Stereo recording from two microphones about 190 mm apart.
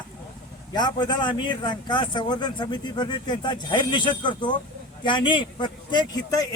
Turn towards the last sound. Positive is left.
turn(degrees=20)  # may be behind; listen again after turning